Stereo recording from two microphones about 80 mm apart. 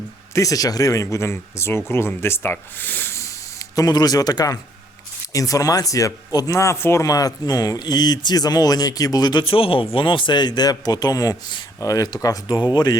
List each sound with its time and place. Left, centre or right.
0.3 s speech: left
3.2 s spray: left
5.3 s speech: left
7.0 s speech: left